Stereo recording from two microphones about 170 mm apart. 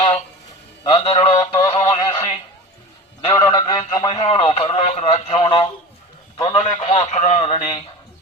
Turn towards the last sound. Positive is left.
turn(degrees=35)  # may be behind; listen again after turning